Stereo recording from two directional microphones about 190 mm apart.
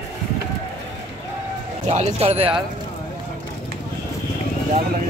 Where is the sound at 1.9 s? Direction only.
35° right (ahead or behind).